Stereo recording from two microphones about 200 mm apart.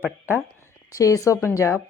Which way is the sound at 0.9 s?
15° left (ahead or behind).